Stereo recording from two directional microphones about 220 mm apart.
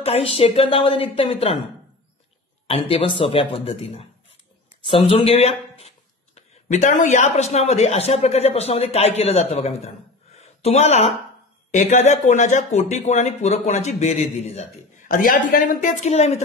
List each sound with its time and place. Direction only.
0.0 s speech: 25° left (ahead or behind)
2.9 s speech: 25° left (ahead or behind)